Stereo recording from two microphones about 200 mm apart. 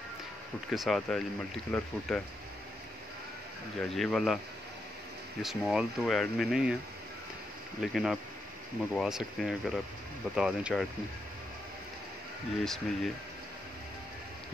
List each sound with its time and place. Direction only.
0.7 s speech: centre (ahead or behind)
3.8 s speech: centre (ahead or behind)
5.4 s speech: centre (ahead or behind)
7.8 s speech: centre (ahead or behind)
12.6 s speech: centre (ahead or behind)